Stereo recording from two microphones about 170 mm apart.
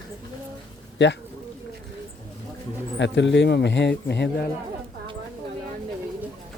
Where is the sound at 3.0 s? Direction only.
90° left.